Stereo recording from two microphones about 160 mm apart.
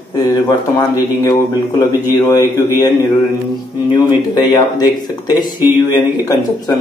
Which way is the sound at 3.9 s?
30° left (ahead or behind).